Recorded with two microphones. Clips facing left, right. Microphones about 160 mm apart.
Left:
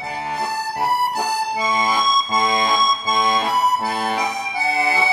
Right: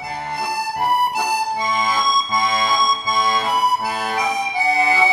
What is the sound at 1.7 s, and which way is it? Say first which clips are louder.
Accordion: left 2 dB; 20° left (ahead or behind).